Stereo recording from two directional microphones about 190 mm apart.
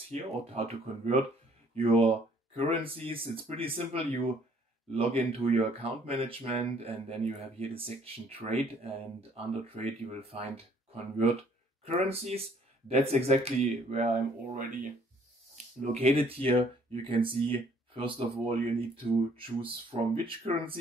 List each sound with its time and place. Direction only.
0.1 s speech: 30° right (ahead or behind)
10.0 s speech: 30° right (ahead or behind)
11.8 s speech: 30° right (ahead or behind)